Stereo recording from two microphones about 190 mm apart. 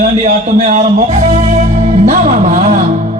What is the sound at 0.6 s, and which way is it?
Music, 40° right (ahead or behind).